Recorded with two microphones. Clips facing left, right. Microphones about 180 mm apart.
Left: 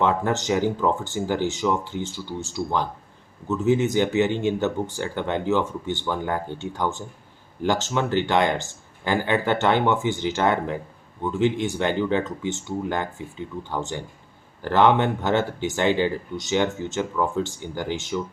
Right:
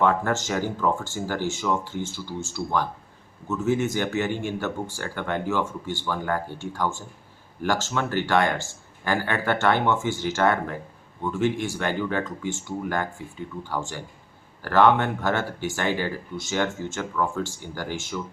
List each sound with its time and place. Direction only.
0.0 s speech: 20° left (ahead or behind)